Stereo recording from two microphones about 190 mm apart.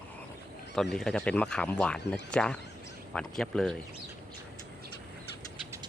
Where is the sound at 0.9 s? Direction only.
5° left (ahead or behind).